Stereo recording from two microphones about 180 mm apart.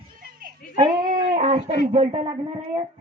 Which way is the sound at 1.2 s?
35° right (ahead or behind).